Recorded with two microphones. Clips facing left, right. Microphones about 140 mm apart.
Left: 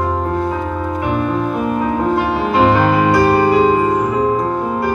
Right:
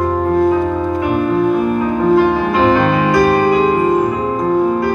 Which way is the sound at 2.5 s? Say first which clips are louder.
Even; 35° left (ahead or behind).